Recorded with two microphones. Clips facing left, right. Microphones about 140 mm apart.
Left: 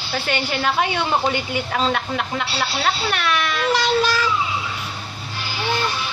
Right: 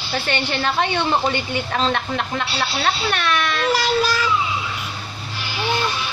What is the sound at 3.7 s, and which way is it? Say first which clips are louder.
Speech: left 1 dB; 5° right (ahead or behind).